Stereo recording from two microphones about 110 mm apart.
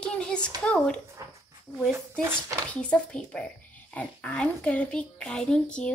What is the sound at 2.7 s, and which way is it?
A child's voice, 10° left (ahead or behind).